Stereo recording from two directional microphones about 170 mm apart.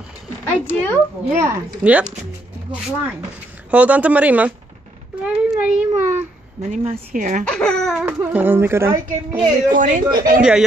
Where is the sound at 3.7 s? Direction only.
10° right (ahead or behind).